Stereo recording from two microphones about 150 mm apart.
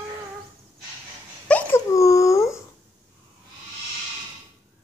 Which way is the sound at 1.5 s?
10° left (ahead or behind).